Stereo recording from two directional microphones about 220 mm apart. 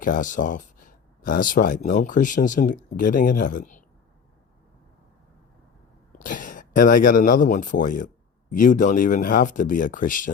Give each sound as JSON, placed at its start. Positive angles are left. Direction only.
{"t": 0.0, "sound": "speech", "side_deg": 35}
{"t": 6.1, "sound": "speech", "side_deg": 35}